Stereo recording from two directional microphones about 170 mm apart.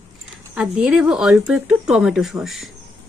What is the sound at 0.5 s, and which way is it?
Speech, 5° right (ahead or behind).